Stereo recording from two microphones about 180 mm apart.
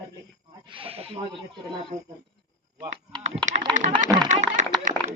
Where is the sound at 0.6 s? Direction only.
30° right (ahead or behind).